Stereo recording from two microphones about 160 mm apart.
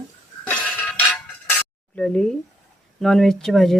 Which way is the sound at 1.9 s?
5° left (ahead or behind).